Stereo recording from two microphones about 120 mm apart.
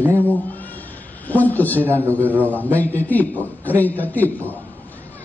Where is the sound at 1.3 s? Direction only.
15° left (ahead or behind).